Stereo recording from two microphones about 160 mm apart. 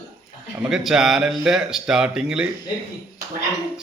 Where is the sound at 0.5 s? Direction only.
5° right (ahead or behind).